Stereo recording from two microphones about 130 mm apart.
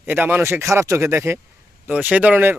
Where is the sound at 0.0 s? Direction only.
15° right (ahead or behind).